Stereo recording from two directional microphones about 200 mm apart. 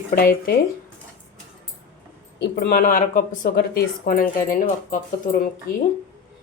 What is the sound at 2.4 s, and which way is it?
Speech, 50° left (ahead or behind).